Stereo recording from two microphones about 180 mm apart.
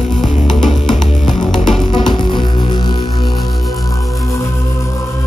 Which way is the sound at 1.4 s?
25° left (ahead or behind).